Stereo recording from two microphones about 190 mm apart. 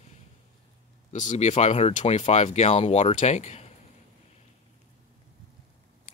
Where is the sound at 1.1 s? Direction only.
40° left (ahead or behind).